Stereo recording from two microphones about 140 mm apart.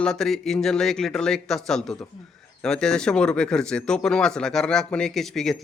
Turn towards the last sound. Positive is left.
turn(degrees=0)  # may be behind; listen again after turning